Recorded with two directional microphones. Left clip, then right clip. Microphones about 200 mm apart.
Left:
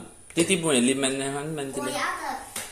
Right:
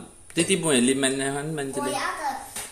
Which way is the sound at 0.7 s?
15° right (ahead or behind).